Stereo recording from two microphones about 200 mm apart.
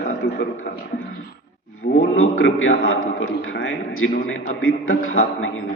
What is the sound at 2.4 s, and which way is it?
A man's voice, 85° left.